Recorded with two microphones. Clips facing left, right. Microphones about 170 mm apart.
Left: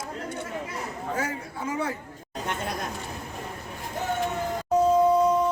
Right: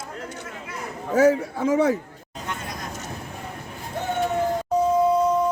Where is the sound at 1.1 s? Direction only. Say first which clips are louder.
Right 15 dB; 90° right.